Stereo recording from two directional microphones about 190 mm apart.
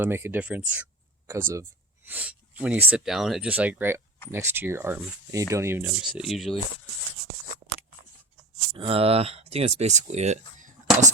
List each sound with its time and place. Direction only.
0.0 s speech: 10° right (ahead or behind)
6.1 s speech: centre (ahead or behind)
8.7 s speech: 30° right (ahead or behind)